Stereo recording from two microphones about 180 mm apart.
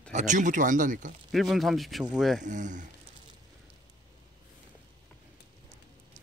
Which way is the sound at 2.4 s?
45° right (ahead or behind).